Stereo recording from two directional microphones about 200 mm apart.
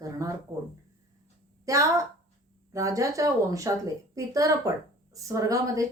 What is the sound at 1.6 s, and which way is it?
A woman's voice, 15° right (ahead or behind).